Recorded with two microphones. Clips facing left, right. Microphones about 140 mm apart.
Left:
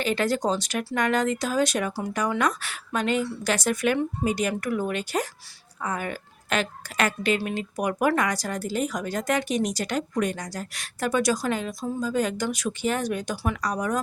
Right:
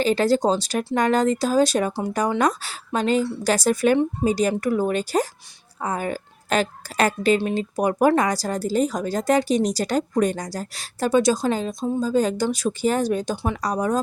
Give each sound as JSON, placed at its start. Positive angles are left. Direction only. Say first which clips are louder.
{"t": 0.0, "sound": "a woman's voice", "louder": "right 6 dB", "side_deg": -35}